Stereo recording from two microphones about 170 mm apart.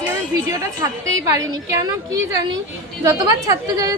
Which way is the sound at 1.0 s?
20° right (ahead or behind).